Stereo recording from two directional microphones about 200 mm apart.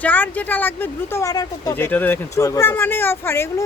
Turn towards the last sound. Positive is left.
turn(degrees=10)  # may be behind; listen again after turning